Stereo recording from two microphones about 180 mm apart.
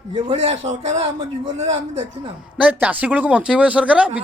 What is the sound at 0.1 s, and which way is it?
Speech, 30° right (ahead or behind).